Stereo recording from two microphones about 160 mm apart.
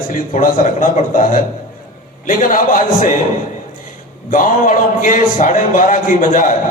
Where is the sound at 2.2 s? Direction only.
55° left (ahead or behind).